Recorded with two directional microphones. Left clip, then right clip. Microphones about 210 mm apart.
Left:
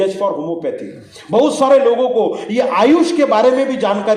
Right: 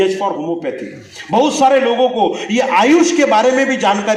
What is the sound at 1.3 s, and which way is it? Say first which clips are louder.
Speech: right 1 dB; 60° left (ahead or behind).